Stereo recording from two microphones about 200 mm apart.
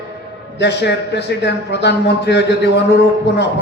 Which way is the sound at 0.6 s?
60° left (ahead or behind).